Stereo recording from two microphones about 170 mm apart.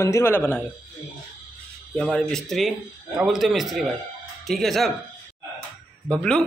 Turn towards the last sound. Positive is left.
turn(degrees=5)  # may be behind; listen again after turning